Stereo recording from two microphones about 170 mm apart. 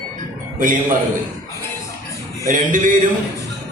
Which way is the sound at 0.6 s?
55° right (ahead or behind).